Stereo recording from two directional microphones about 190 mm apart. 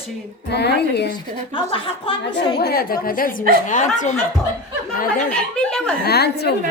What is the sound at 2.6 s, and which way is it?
Speech, 55° left (ahead or behind).